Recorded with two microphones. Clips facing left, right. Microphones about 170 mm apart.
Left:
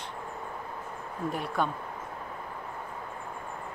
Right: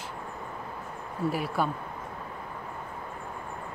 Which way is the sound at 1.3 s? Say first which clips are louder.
Left 1 dB; 5° right (ahead or behind).